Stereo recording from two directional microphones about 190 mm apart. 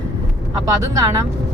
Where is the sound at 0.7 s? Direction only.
20° right (ahead or behind).